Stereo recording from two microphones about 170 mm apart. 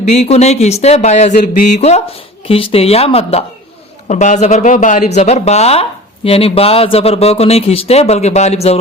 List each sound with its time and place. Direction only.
0.1 s a man's voice: 40° left (ahead or behind)